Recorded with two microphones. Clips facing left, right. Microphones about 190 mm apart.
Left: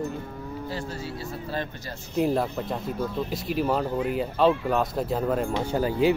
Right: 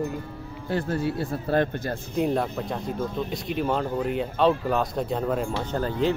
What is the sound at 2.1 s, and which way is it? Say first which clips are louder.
Speech: left 1 dB; centre (ahead or behind).